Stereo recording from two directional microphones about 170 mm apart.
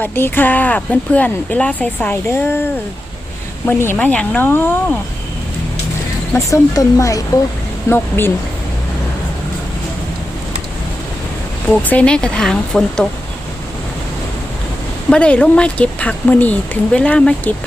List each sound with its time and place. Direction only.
0.0 s speech: 10° left (ahead or behind)
3.7 s speech: 15° left (ahead or behind)
6.3 s speech: 20° left (ahead or behind)
11.7 s speech: 10° left (ahead or behind)
15.1 s speech: 5° left (ahead or behind)